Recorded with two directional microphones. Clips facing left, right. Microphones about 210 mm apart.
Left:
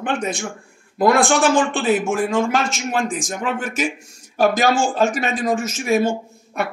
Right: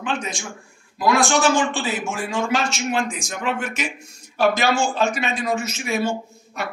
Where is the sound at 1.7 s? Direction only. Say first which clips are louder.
Left 7 dB; 55° left (ahead or behind).